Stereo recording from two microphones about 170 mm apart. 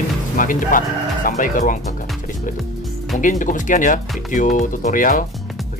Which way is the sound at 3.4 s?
50° left (ahead or behind).